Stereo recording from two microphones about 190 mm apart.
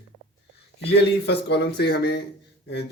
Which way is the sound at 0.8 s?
60° left (ahead or behind).